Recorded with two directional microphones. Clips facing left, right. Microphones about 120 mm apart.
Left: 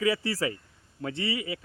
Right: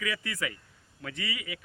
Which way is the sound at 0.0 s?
30° left (ahead or behind).